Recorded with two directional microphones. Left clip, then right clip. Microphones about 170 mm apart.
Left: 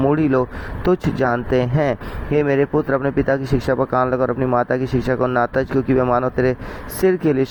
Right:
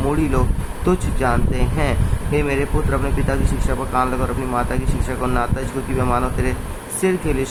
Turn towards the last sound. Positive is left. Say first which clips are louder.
# left 3 dB
turn(degrees=40)  # may be behind; listen again after turning